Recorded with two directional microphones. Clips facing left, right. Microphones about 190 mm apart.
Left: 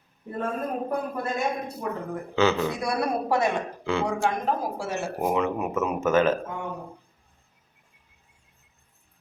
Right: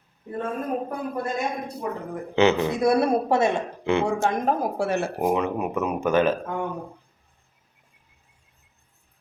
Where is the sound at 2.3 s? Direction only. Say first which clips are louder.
Right 3 dB; 20° right (ahead or behind).